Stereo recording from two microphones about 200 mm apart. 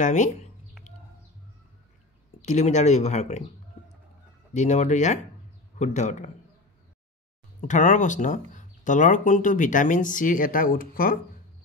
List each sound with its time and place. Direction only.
0.0 s speech: 40° left (ahead or behind)
2.4 s speech: 35° left (ahead or behind)
4.6 s speech: 35° left (ahead or behind)
7.6 s speech: 40° left (ahead or behind)